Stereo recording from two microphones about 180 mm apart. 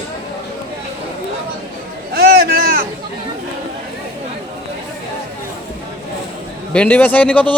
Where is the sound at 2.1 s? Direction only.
60° right (ahead or behind).